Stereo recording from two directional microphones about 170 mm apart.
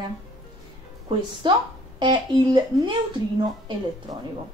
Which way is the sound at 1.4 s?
25° right (ahead or behind).